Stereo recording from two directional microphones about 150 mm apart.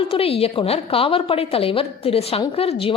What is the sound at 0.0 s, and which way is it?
A woman's voice, 40° left (ahead or behind).